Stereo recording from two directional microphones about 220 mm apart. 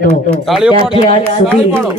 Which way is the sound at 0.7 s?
25° left (ahead or behind).